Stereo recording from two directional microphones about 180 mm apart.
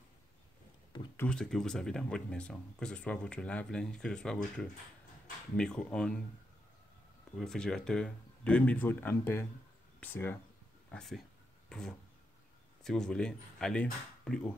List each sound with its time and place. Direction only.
1.1 s speech: 5° left (ahead or behind)
5.6 s speech: 5° left (ahead or behind)
7.3 s speech: 5° left (ahead or behind)
12.8 s speech: 5° left (ahead or behind)